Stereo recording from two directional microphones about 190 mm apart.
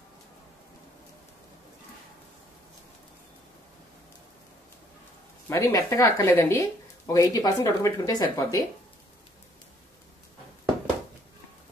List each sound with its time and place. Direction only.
5.5 s speech: 15° left (ahead or behind)